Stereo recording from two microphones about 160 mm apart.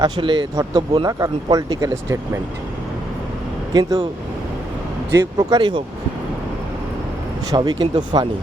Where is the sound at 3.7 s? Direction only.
25° right (ahead or behind).